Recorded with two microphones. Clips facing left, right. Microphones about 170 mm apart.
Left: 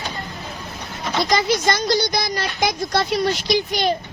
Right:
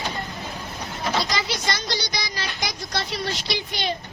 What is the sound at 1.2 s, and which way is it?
Speech, 50° left (ahead or behind).